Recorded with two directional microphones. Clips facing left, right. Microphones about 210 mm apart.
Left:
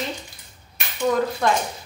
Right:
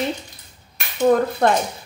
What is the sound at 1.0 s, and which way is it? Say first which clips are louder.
Speech: right 5 dB; 50° right (ahead or behind).